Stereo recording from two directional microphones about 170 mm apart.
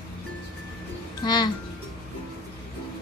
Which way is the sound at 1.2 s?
25° left (ahead or behind).